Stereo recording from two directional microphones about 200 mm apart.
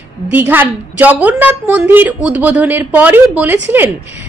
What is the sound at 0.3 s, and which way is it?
A woman's voice, 10° right (ahead or behind).